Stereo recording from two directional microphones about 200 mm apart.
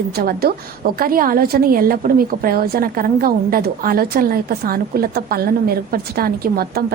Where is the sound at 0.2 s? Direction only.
50° right (ahead or behind).